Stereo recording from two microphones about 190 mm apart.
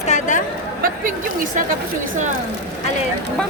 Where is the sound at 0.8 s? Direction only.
45° right (ahead or behind).